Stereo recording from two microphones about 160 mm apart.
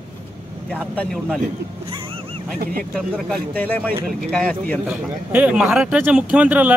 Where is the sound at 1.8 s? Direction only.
35° right (ahead or behind).